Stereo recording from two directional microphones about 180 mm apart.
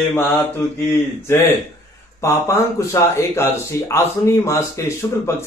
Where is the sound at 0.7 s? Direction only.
15° left (ahead or behind).